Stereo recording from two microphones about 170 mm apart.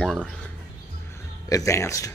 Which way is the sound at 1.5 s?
20° left (ahead or behind).